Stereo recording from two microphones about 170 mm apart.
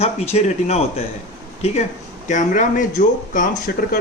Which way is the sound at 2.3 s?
45° left (ahead or behind).